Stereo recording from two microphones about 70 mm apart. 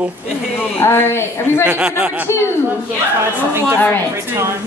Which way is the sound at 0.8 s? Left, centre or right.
Left.